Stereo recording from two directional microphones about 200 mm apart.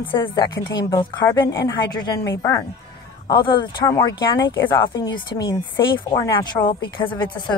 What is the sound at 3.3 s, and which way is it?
Speech, 25° left (ahead or behind).